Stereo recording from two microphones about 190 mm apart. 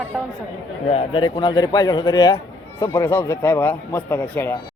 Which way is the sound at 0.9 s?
30° left (ahead or behind).